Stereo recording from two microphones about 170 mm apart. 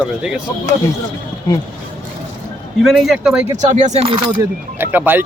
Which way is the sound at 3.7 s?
45° right (ahead or behind).